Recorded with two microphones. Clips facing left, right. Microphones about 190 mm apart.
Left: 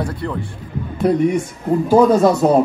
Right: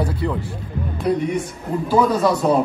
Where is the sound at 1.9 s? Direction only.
45° left (ahead or behind).